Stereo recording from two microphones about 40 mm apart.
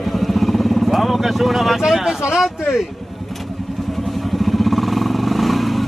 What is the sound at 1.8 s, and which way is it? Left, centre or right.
Speech, centre.